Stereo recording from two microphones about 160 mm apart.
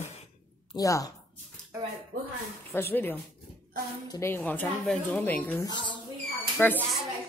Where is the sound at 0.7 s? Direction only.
20° left (ahead or behind).